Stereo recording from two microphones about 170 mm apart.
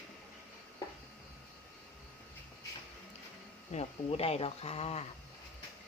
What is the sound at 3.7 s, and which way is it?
Speech, 35° left (ahead or behind).